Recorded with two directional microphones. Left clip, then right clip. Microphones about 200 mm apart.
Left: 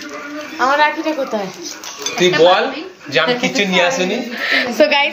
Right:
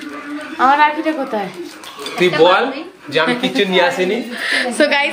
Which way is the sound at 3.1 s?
15° right (ahead or behind).